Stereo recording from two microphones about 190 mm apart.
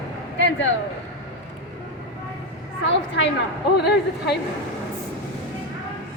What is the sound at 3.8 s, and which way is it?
Speech, 60° left (ahead or behind).